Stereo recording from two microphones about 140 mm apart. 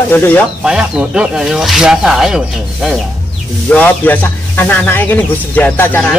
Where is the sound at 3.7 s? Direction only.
10° left (ahead or behind).